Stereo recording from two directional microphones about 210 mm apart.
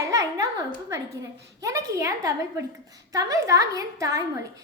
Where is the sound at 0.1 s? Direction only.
15° right (ahead or behind).